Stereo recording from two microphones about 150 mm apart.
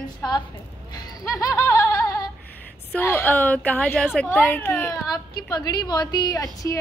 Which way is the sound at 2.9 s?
15° left (ahead or behind).